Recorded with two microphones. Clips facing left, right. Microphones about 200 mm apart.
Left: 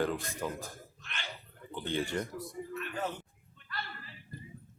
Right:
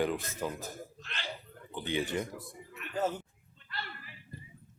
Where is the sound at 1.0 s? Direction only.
35° right (ahead or behind).